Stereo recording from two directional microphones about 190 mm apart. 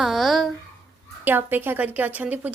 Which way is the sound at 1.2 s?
10° right (ahead or behind).